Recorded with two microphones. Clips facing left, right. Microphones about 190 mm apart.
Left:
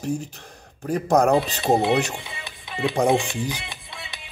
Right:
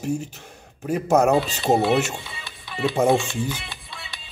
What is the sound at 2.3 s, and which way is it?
Music, 20° left (ahead or behind).